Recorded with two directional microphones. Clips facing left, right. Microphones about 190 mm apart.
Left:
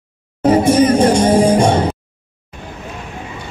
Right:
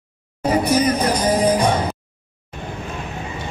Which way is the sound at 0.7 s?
30° left (ahead or behind).